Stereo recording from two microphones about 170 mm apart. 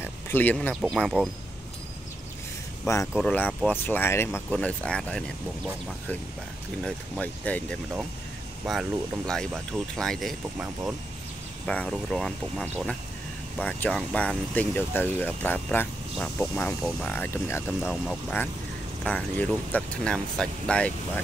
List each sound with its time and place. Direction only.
0.0 s speech: 10° left (ahead or behind)
2.9 s speech: 20° left (ahead or behind)
6.8 s speech: 10° left (ahead or behind)
19.0 s speech: 5° left (ahead or behind)